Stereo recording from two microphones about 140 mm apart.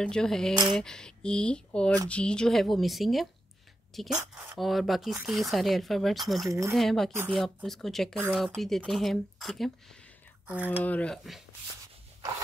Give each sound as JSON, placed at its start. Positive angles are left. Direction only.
{"t": 0.0, "sound": "speech", "side_deg": 5}
{"t": 4.1, "sound": "a woman's voice", "side_deg": -25}
{"t": 4.6, "sound": "speech", "side_deg": 0}
{"t": 10.4, "sound": "speech", "side_deg": -10}
{"t": 10.8, "sound": "speech", "side_deg": 10}